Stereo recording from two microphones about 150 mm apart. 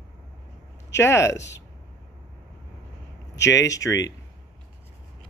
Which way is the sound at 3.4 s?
20° left (ahead or behind).